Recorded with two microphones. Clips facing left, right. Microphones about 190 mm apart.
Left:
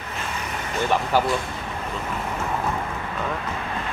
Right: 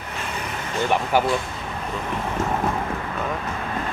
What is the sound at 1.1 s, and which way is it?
Speech, 15° right (ahead or behind).